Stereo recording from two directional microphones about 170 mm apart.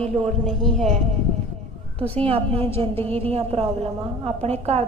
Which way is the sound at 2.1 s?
35° right (ahead or behind).